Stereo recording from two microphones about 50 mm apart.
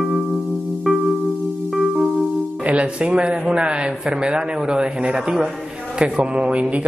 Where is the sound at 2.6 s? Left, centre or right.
Right.